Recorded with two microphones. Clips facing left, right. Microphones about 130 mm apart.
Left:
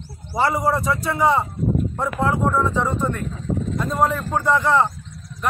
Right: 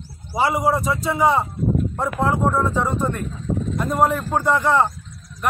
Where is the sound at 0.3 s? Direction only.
10° right (ahead or behind).